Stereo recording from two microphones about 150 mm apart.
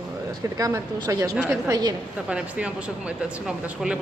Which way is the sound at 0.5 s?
25° right (ahead or behind).